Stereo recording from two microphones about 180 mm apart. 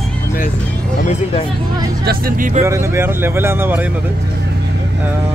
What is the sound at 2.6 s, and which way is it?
Speech, 15° right (ahead or behind).